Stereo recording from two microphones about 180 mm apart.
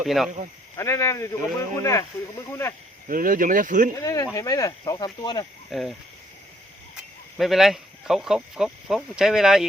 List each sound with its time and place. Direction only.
0.0 s speech: centre (ahead or behind)
0.8 s speech: 15° left (ahead or behind)
3.1 s speech: 50° right (ahead or behind)
3.9 s speech: 20° left (ahead or behind)
5.7 s speech: centre (ahead or behind)
7.3 s speech: centre (ahead or behind)